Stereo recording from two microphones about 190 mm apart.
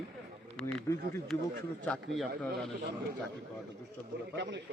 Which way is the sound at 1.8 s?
5° left (ahead or behind).